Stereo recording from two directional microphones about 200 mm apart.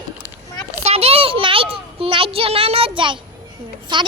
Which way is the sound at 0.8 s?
30° right (ahead or behind).